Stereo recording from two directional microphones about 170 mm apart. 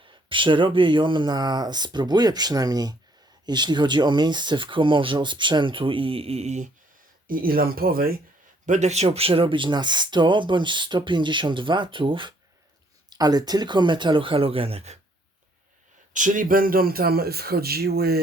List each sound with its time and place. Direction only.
0.1 s speech: 30° right (ahead or behind)
7.3 s speech: 60° right (ahead or behind)
8.6 s speech: 45° right (ahead or behind)
16.1 s speech: 50° right (ahead or behind); by 18.2 s 65° right (ahead or behind)